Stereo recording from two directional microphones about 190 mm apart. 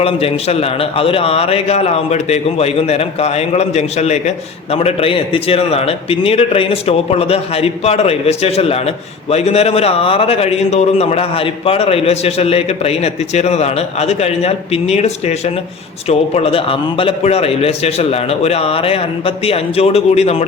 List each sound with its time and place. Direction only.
0.0 s a man's voice: 30° left (ahead or behind)